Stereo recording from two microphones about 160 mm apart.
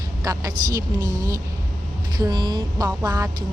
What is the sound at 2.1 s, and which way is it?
Speech, 25° right (ahead or behind).